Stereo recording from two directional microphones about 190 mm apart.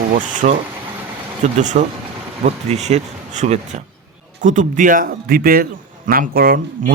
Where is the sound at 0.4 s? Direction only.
40° right (ahead or behind).